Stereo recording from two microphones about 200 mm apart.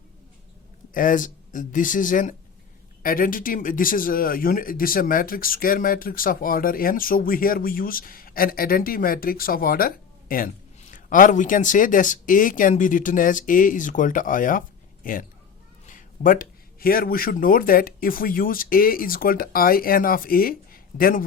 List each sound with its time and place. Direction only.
0.9 s speech: 40° left (ahead or behind)